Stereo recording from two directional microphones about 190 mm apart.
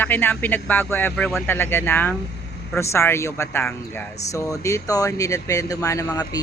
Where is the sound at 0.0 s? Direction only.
10° left (ahead or behind).